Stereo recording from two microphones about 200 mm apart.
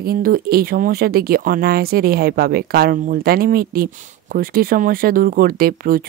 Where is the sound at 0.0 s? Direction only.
45° right (ahead or behind).